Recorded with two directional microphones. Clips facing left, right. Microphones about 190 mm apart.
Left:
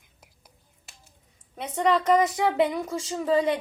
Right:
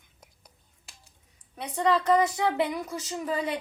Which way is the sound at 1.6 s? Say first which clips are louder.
Left 2 dB; 20° left (ahead or behind).